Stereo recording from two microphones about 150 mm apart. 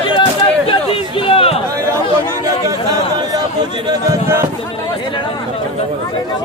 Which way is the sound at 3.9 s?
20° right (ahead or behind).